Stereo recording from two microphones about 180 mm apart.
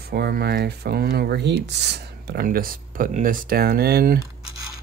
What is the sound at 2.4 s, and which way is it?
Speech, 50° right (ahead or behind).